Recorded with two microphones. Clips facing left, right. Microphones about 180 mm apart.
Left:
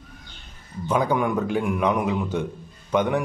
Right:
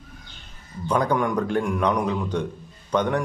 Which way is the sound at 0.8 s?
5° left (ahead or behind).